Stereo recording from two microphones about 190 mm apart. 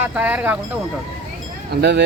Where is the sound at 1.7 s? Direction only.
60° right (ahead or behind).